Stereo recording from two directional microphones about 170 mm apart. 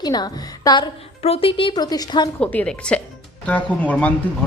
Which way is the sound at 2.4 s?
10° left (ahead or behind).